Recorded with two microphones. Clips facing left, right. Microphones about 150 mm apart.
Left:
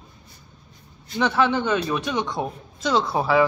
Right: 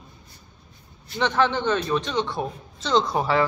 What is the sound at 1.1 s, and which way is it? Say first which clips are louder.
Speech: left 1 dB; 10° left (ahead or behind).